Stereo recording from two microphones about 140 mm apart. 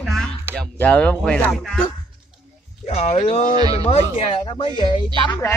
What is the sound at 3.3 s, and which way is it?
Speech, 60° left (ahead or behind).